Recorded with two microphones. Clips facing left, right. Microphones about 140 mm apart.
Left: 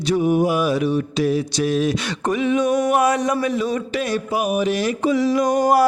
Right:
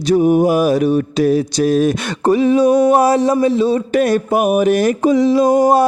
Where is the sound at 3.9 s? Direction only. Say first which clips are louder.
Right 8 dB; 50° right (ahead or behind); by 5.9 s 25° right (ahead or behind).